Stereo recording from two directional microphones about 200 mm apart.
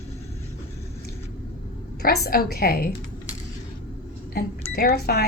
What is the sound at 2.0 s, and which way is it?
Speech, 50° left (ahead or behind).